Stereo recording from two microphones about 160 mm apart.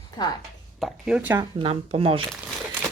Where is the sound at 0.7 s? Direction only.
5° right (ahead or behind).